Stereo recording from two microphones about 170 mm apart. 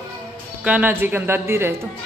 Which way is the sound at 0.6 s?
10° right (ahead or behind).